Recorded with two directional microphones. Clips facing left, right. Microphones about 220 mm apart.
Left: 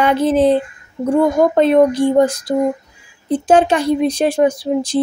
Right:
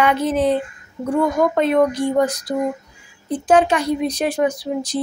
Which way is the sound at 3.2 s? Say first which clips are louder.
Left 3 dB; 25° left (ahead or behind).